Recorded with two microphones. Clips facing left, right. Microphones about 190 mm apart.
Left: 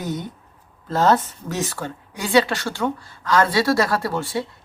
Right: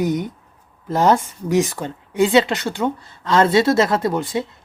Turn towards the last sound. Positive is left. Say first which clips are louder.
# right 3 dB
turn(degrees=-20)  # may be behind; listen again after turning